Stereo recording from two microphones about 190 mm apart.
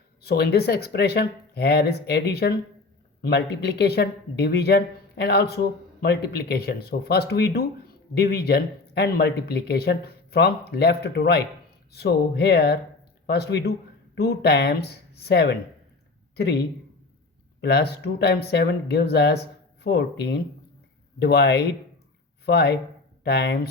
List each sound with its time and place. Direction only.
0.2 s speech: 60° left (ahead or behind)